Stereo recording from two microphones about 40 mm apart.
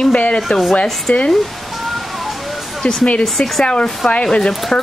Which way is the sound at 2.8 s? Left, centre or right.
Left.